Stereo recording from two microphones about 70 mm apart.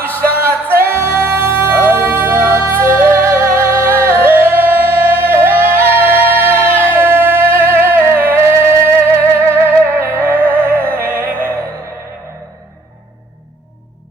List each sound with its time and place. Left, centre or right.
0.4 s music: right